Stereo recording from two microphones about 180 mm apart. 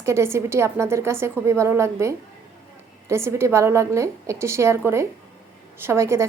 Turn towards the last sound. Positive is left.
turn(degrees=-15)  # may be behind; listen again after turning